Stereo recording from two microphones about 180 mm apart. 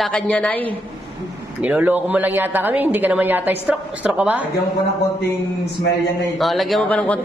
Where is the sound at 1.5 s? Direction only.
10° right (ahead or behind).